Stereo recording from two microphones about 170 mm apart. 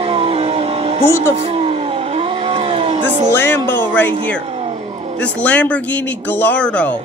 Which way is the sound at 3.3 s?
10° left (ahead or behind).